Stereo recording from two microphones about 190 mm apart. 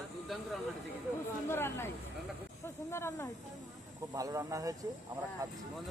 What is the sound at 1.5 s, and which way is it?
Speech, 15° left (ahead or behind).